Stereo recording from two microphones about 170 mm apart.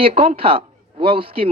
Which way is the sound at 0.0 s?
35° right (ahead or behind).